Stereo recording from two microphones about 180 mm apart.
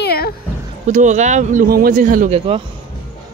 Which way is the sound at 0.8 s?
40° right (ahead or behind).